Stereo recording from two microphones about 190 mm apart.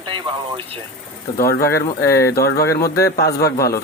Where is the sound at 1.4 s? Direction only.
50° left (ahead or behind).